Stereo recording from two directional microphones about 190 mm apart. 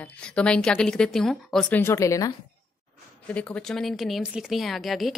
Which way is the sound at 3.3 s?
5° left (ahead or behind).